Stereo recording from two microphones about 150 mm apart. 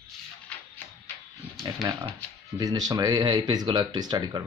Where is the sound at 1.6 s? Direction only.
25° right (ahead or behind).